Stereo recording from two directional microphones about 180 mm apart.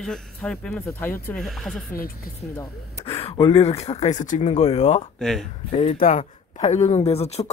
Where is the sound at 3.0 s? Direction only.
30° left (ahead or behind).